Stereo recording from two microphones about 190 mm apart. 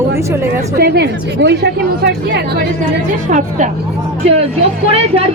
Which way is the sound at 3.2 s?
45° right (ahead or behind).